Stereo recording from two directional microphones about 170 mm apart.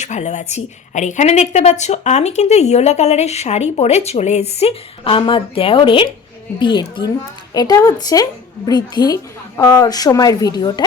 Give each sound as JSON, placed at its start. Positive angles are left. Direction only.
{"t": 0.0, "sound": "a woman's voice", "side_deg": 45}